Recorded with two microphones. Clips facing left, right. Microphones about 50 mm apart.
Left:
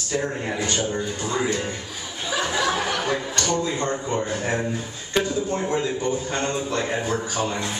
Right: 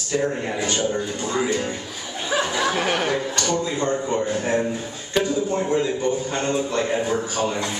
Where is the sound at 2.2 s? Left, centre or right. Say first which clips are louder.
Right 1 dB; right.